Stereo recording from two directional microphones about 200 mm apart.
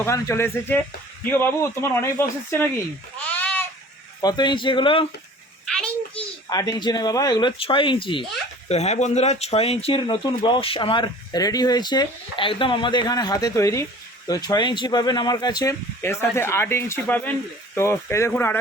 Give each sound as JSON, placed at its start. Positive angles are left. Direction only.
{"t": 0.0, "sound": "speech", "side_deg": 15}
{"t": 3.2, "sound": "goat", "side_deg": 5}
{"t": 4.2, "sound": "speech", "side_deg": 20}
{"t": 5.6, "sound": "a sound", "side_deg": 5}
{"t": 6.1, "sound": "speech", "side_deg": 20}